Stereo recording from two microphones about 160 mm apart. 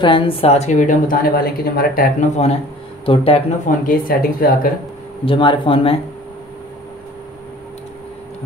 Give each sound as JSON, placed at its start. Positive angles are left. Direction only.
{"t": 0.0, "sound": "a woman's voice", "side_deg": 30}
{"t": 2.1, "sound": "a woman's voice", "side_deg": 40}
{"t": 3.6, "sound": "speech", "side_deg": 60}
{"t": 5.2, "sound": "speech", "side_deg": 30}